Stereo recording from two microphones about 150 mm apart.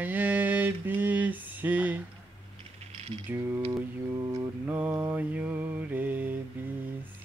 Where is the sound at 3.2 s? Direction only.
15° right (ahead or behind).